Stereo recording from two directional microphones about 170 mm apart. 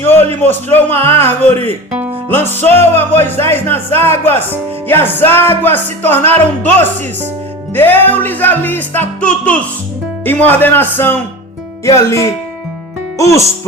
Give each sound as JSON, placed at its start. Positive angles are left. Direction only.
{"t": 0.0, "sound": "music", "side_deg": 10}
{"t": 13.1, "sound": "speech", "side_deg": 20}